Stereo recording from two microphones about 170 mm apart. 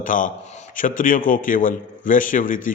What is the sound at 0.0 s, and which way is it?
A man's voice, 50° left (ahead or behind).